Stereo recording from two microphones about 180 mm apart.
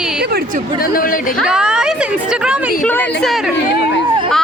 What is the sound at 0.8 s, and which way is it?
Speech, 50° left (ahead or behind).